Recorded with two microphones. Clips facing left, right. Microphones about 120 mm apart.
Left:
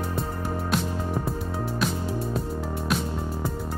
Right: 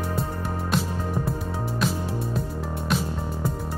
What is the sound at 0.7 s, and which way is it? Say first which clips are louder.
Music: right 2 dB; 5° left (ahead or behind).